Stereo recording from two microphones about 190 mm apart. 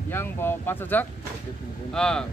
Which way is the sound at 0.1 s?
10° left (ahead or behind).